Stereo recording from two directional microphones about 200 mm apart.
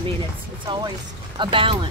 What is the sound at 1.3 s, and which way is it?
Speech, 25° right (ahead or behind).